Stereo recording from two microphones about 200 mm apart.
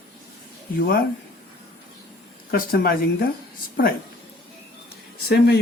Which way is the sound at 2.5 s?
50° left (ahead or behind).